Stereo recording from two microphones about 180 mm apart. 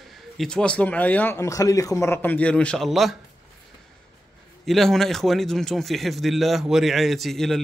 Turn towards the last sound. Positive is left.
turn(degrees=0)  # may be behind; listen again after turning